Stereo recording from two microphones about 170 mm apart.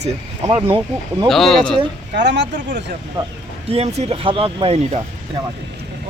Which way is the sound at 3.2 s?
25° right (ahead or behind).